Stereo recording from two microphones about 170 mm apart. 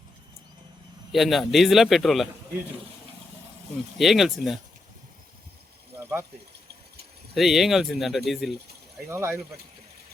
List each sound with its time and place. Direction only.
1.1 s speech: centre (ahead or behind)
3.9 s speech: centre (ahead or behind)
6.0 s a sound: 15° right (ahead or behind)
7.3 s speech: centre (ahead or behind)
9.0 s speech: 15° right (ahead or behind)